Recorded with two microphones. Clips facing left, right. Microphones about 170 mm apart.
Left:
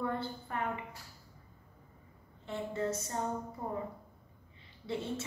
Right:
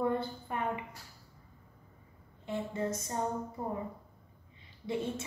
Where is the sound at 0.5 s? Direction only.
15° right (ahead or behind).